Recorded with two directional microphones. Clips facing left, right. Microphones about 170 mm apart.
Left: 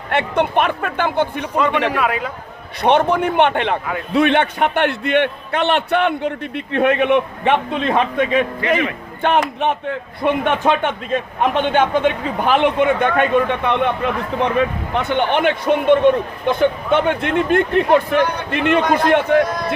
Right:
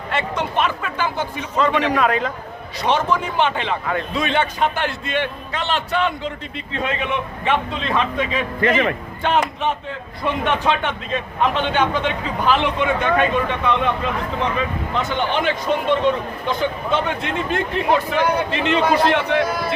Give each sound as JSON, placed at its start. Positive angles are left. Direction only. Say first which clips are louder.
{"t": 0.1, "sound": "a man's voice", "louder": "left 6 dB", "side_deg": 60}
{"t": 1.5, "sound": "a man's voice", "louder": "even", "side_deg": 10}
{"t": 2.8, "sound": "a man's voice", "louder": "left 5 dB", "side_deg": 60}
{"t": 19.5, "sound": "speech", "louder": "left 1 dB", "side_deg": -5}